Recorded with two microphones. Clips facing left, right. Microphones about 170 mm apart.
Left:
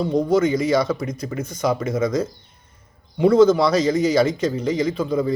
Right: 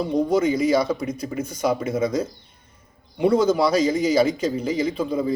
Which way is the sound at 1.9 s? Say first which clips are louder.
Left 1 dB; 30° right (ahead or behind).